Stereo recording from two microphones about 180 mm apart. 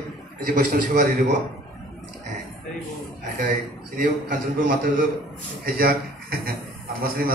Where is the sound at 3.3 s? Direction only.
50° right (ahead or behind).